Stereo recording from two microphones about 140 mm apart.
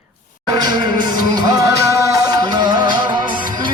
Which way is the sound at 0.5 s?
30° right (ahead or behind).